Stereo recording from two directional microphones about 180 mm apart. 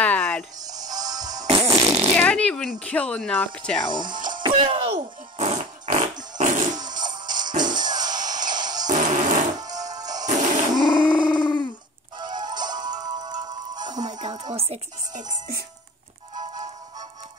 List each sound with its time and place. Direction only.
0.0 s music: 5° left (ahead or behind)
0.7 s fart: 20° right (ahead or behind)
2.1 s speech: 5° left (ahead or behind)
3.9 s speech: 45° right (ahead or behind)
4.3 s fart: 30° right (ahead or behind); by 6.8 s 45° right (ahead or behind)
7.0 s music: 45° right (ahead or behind)
7.6 s music: 25° right (ahead or behind)
8.9 s fart: 45° right (ahead or behind)
9.6 s music: 20° right (ahead or behind)
10.1 s music: 40° right (ahead or behind)
11.0 s a sound: 5° right (ahead or behind)
12.2 s music: 25° right (ahead or behind)
14.0 s music: 40° right (ahead or behind)
14.3 s music: 30° right (ahead or behind)